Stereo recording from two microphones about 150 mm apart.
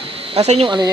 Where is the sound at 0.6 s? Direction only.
30° right (ahead or behind).